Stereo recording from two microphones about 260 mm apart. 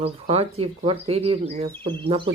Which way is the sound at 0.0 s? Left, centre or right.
Right.